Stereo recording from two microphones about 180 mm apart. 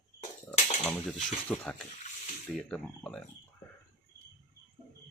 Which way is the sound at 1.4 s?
10° left (ahead or behind).